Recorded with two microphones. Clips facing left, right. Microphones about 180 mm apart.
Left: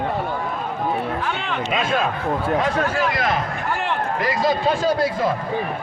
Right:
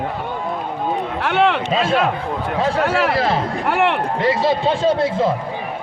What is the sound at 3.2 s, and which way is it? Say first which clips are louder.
Speech: right 4 dB; 30° right (ahead or behind).